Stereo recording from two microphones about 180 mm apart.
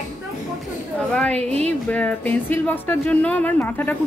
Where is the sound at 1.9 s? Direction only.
10° left (ahead or behind).